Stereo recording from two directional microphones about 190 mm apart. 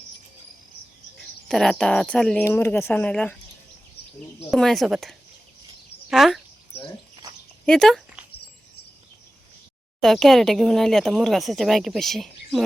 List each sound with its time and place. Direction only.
1.2 s speech: centre (ahead or behind)
4.5 s speech: centre (ahead or behind)
7.6 s dog: 5° left (ahead or behind)
10.0 s speech: centre (ahead or behind)